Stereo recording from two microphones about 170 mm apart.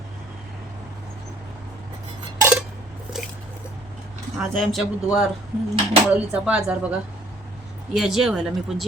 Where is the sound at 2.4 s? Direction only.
15° right (ahead or behind).